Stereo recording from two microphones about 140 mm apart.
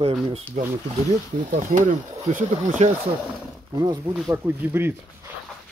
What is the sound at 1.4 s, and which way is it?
Speech, 75° right (ahead or behind).